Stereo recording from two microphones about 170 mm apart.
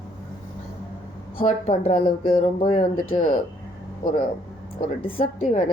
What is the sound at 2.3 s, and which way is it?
Speech, 35° left (ahead or behind).